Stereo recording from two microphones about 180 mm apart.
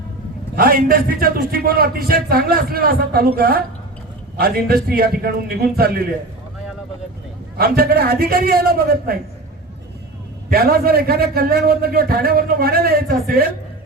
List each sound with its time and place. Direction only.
0.5 s a man's voice: 55° right (ahead or behind)
7.5 s a man's voice: 60° right (ahead or behind)
10.5 s a man's voice: 55° right (ahead or behind)